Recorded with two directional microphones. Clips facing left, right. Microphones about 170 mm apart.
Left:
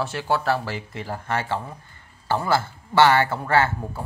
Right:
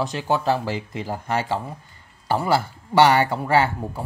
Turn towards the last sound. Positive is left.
turn(degrees=-15)  # may be behind; listen again after turning